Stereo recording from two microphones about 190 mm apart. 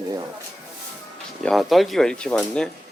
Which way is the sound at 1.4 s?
Centre (ahead or behind).